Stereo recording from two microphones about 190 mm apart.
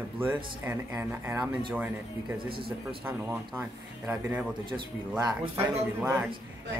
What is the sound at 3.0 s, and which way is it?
Speech, 10° right (ahead or behind).